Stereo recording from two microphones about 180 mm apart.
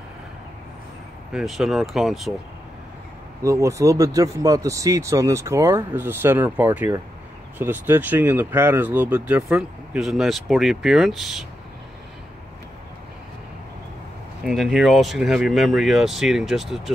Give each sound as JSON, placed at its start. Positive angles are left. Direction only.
{"t": 1.3, "sound": "speech", "side_deg": 0}
{"t": 3.4, "sound": "speech", "side_deg": -15}
{"t": 14.4, "sound": "speech", "side_deg": 0}